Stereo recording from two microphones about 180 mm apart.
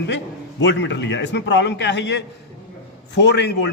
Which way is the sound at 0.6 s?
80° left.